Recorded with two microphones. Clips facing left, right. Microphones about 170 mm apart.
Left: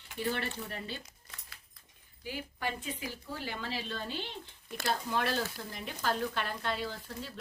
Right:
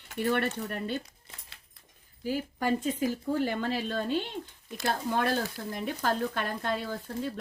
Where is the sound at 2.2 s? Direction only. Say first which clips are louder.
Right 9 dB; 45° right (ahead or behind).